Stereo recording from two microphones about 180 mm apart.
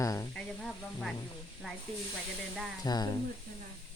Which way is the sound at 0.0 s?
20° left (ahead or behind).